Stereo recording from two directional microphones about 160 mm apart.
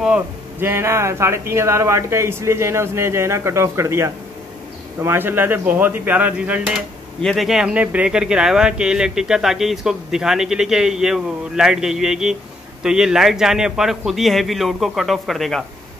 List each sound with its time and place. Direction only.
0.0 s a man's voice: 10° right (ahead or behind)
7.2 s speech: centre (ahead or behind)